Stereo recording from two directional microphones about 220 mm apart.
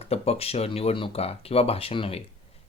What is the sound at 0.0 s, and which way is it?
Speech, 25° left (ahead or behind).